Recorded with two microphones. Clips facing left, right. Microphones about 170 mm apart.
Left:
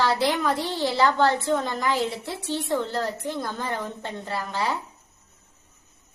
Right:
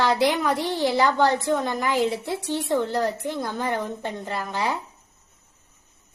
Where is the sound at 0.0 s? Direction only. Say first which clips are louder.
Right 2 dB; 15° right (ahead or behind).